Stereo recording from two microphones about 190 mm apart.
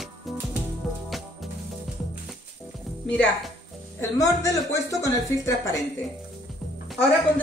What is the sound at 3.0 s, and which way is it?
Speech, 5° left (ahead or behind).